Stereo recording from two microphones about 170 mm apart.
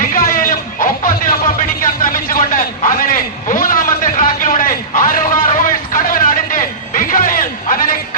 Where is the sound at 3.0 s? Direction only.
55° left (ahead or behind).